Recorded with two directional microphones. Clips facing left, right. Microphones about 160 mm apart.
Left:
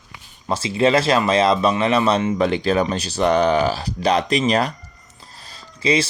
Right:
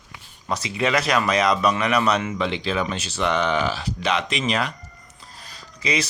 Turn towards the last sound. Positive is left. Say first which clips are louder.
# left 6 dB
turn(degrees=30)  # may be behind; listen again after turning